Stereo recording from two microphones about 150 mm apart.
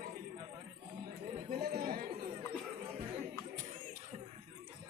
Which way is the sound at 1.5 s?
90° right.